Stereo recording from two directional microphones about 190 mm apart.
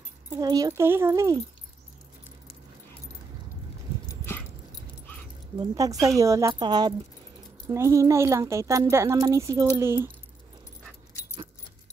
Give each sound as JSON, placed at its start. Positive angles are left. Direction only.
{"t": 0.3, "sound": "speech", "side_deg": -20}
{"t": 5.6, "sound": "speech", "side_deg": -20}